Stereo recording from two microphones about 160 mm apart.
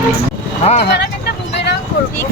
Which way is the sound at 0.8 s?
90° left.